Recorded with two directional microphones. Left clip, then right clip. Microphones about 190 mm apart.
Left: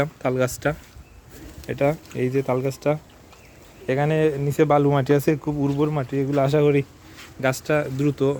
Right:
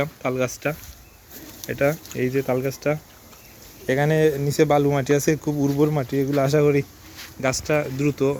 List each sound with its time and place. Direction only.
0.0 s speech: 20° left (ahead or behind)
1.6 s speech: 15° left (ahead or behind)
5.6 s speech: centre (ahead or behind)